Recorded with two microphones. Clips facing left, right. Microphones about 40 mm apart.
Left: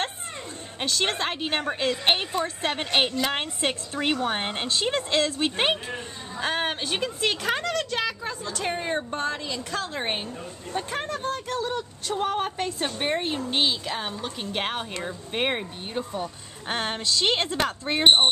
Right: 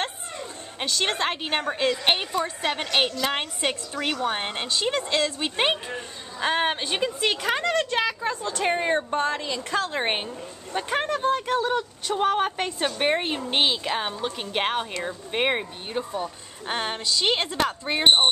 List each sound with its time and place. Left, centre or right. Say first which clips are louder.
0.7 s speech: right 1 dB; centre
3.9 s a woman's voice: left 1 dB; centre
6.4 s a woman's voice: right 3 dB; centre